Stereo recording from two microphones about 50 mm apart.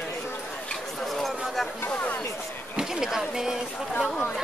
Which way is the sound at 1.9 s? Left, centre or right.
Left.